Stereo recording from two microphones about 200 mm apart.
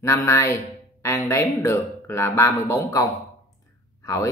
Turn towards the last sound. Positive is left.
turn(degrees=15)  # may be behind; listen again after turning